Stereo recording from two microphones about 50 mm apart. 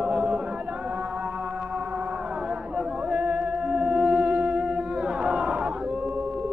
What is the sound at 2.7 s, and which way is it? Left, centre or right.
Music, right.